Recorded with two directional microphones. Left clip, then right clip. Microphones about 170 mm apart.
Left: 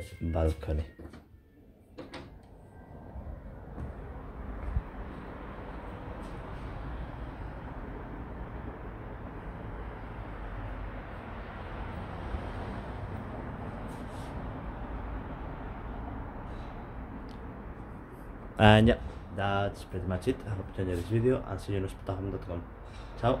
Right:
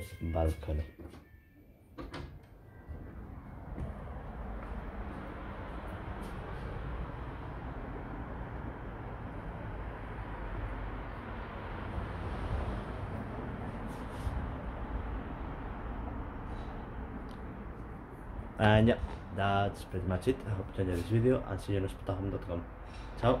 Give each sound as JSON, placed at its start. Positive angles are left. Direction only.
{"t": 0.3, "sound": "speech", "side_deg": 20}
{"t": 18.6, "sound": "a sound", "side_deg": 55}
{"t": 19.3, "sound": "speech", "side_deg": 0}